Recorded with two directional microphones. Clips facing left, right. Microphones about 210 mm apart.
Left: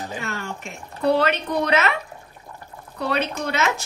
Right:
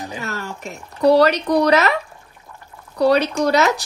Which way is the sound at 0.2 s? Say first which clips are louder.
Right 2 dB; 40° right (ahead or behind).